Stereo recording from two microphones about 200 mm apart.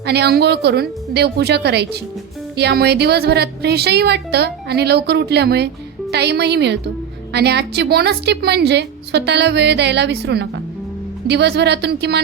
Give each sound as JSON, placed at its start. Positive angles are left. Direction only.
{"t": 0.0, "sound": "a woman's voice", "side_deg": -55}